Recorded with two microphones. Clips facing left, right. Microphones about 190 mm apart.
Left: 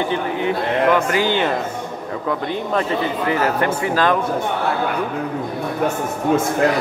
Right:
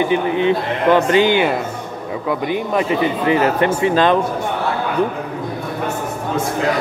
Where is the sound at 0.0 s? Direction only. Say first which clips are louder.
Right 5 dB; 20° right (ahead or behind).